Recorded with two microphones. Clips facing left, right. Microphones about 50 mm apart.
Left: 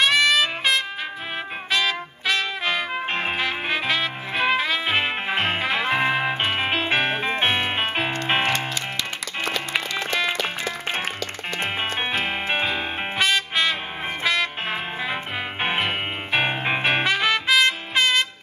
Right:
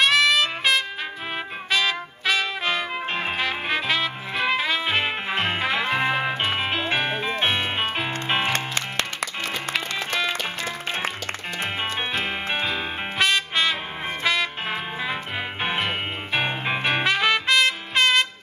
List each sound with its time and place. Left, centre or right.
0.0 s music: centre
7.1 s music: left
8.5 s music: right
10.6 s music: left
12.6 s music: centre
16.8 s trumpet: centre